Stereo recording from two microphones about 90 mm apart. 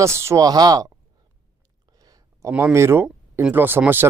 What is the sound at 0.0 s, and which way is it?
Speech, 30° right (ahead or behind).